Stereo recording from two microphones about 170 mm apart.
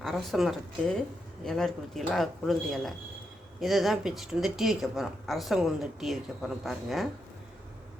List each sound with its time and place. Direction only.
0.0 s speech: centre (ahead or behind)